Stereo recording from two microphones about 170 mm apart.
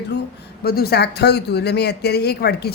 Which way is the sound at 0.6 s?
65° left (ahead or behind).